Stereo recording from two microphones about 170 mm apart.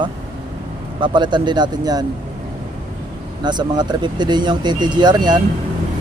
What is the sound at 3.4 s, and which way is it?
Speech, 25° right (ahead or behind).